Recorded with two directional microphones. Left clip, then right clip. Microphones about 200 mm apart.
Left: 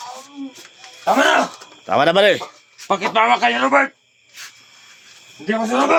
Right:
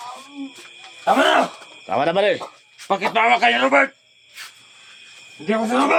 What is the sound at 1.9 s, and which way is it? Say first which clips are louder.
A man's voice: left 5 dB; 25° left (ahead or behind).